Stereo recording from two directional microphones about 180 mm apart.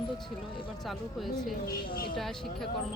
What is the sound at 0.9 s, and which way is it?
Speech, centre (ahead or behind).